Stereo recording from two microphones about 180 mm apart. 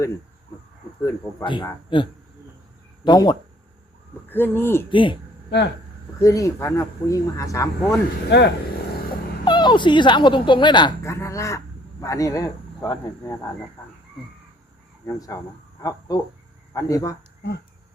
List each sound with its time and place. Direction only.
1.0 s speech: 15° left (ahead or behind)
4.3 s speech: 10° left (ahead or behind)
4.9 s speech: 25° left (ahead or behind)
5.5 s speech: 70° left (ahead or behind)
6.2 s speech: 15° left (ahead or behind)
8.3 s speech: 70° left (ahead or behind)
9.4 s a woman's voice: 25° left (ahead or behind)
15.0 s speech: 20° left (ahead or behind)